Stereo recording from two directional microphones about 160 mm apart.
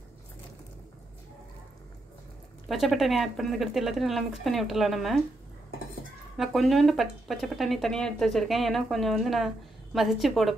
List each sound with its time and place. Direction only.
2.7 s speech: centre (ahead or behind)
6.3 s speech: centre (ahead or behind)